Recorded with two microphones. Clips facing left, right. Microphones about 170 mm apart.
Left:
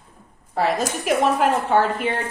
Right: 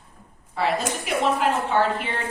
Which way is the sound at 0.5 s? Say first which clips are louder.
Left 3 dB; 45° left (ahead or behind).